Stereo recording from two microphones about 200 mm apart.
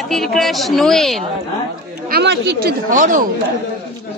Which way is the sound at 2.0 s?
55° right (ahead or behind).